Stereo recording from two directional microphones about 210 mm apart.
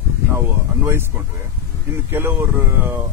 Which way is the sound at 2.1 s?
10° right (ahead or behind).